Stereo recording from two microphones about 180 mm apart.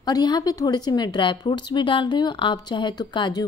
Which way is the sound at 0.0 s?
20° left (ahead or behind).